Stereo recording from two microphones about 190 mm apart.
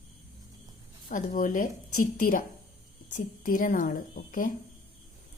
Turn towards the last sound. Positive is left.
turn(degrees=45)  # may be behind; listen again after turning